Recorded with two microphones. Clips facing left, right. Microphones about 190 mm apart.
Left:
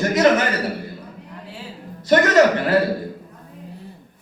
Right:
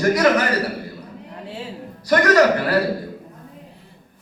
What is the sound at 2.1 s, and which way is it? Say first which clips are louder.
Speech: left 1 dB; 25° left (ahead or behind).